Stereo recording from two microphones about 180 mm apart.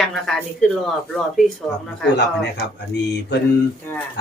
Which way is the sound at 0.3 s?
5° left (ahead or behind).